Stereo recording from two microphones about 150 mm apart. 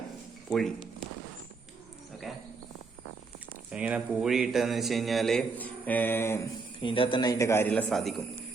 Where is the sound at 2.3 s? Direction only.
Centre (ahead or behind).